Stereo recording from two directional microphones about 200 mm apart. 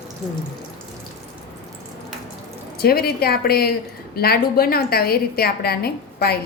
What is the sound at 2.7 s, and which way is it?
A woman's voice, 50° left (ahead or behind).